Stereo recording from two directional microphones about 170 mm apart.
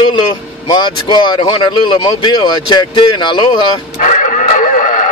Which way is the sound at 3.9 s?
45° left (ahead or behind).